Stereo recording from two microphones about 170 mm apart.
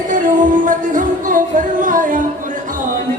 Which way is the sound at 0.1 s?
50° right (ahead or behind).